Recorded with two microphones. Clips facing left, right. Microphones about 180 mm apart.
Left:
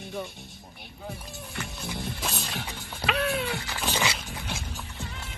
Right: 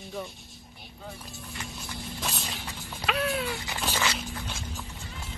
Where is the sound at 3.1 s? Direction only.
Centre (ahead or behind).